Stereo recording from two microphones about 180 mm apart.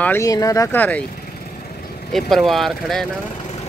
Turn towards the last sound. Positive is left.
turn(degrees=0)  # may be behind; listen again after turning